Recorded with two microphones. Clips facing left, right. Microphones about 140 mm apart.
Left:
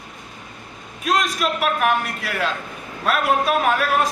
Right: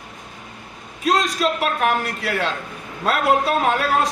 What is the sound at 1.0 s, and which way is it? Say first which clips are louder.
A woman's voice: right 2 dB; 30° right (ahead or behind).